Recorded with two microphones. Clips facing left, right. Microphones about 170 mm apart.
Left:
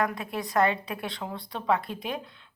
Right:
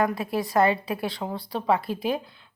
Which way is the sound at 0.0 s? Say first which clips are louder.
Right 4 dB; 5° right (ahead or behind).